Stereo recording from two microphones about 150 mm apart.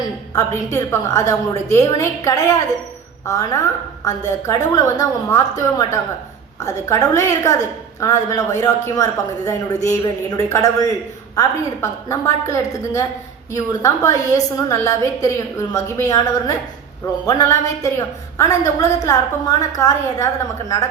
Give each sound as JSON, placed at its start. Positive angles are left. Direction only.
{"t": 0.3, "sound": "a woman's voice", "side_deg": 20}